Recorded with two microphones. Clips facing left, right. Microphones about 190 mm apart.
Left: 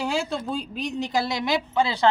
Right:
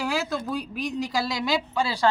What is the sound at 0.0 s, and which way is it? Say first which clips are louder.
A woman's voice: left 1 dB; 25° left (ahead or behind).